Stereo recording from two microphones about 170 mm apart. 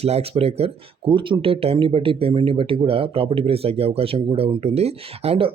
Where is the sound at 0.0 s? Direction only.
35° right (ahead or behind).